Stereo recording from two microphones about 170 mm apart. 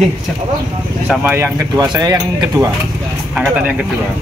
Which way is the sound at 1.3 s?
15° right (ahead or behind).